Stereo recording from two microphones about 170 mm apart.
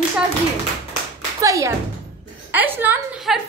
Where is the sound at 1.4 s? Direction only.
20° right (ahead or behind).